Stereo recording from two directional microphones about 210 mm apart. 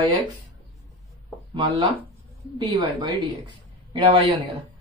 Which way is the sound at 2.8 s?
25° right (ahead or behind).